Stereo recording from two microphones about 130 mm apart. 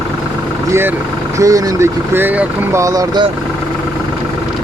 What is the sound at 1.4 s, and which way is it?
Speech, 25° right (ahead or behind).